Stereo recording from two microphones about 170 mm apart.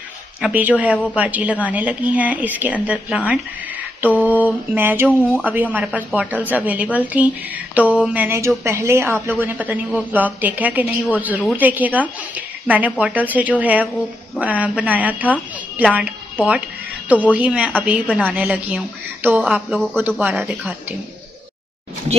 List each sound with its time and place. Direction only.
0.4 s a woman's voice: 10° right (ahead or behind)
4.0 s mantra: 10° right (ahead or behind)
4.3 s a sound: 10° left (ahead or behind)
4.7 s a woman's voice: 10° right (ahead or behind)